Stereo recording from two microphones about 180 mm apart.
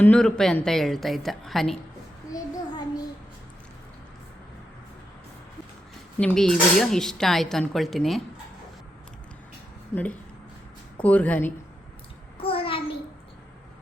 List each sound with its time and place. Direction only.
0.0 s speech: 5° left (ahead or behind)
2.3 s child singing: 20° left (ahead or behind)
6.1 s speech: 5° left (ahead or behind)
11.0 s a woman's voice: 10° left (ahead or behind)
12.4 s a sound: 30° left (ahead or behind)